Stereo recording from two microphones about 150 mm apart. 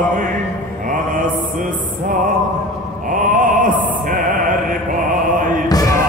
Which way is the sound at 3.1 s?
60° right (ahead or behind).